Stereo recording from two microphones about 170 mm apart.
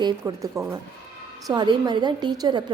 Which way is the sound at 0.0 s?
20° right (ahead or behind).